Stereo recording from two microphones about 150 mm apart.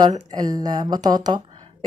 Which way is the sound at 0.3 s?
25° right (ahead or behind).